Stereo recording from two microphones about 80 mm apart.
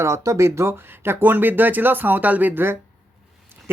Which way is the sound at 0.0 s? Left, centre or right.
Right.